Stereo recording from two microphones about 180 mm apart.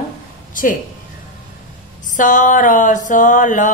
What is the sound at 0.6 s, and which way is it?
Mantra, 50° left (ahead or behind).